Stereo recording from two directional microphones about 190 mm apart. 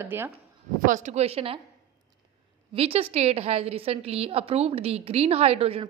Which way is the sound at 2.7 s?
30° right (ahead or behind).